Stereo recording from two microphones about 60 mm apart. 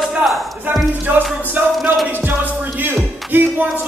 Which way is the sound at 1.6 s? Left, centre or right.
Right.